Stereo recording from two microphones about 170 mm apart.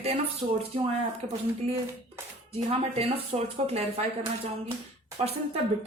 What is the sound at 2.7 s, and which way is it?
A woman's voice, 35° right (ahead or behind).